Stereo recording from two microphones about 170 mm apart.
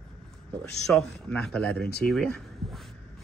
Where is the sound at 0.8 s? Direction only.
5° left (ahead or behind).